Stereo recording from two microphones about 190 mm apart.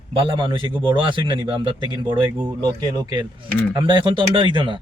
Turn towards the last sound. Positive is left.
turn(degrees=-25)  # may be behind; listen again after turning